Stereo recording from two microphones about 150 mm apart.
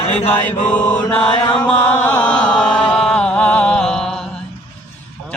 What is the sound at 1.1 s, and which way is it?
Chant, 5° left (ahead or behind).